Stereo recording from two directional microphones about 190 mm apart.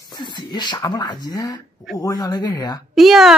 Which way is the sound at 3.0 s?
Centre (ahead or behind).